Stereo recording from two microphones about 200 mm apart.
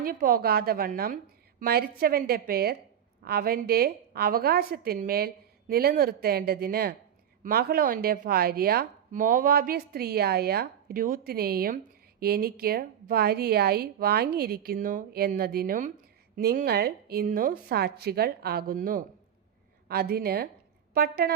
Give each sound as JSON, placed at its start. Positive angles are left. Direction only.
{"t": 0.0, "sound": "speech", "side_deg": -45}